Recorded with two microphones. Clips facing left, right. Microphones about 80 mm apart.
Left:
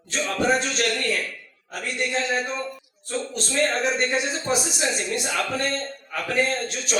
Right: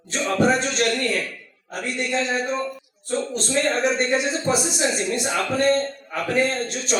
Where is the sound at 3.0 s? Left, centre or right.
Right.